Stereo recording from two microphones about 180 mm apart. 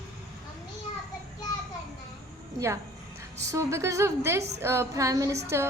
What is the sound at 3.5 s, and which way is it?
A woman's voice, 15° right (ahead or behind).